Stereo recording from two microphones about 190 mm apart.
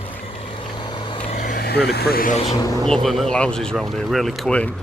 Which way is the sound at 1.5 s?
55° left (ahead or behind).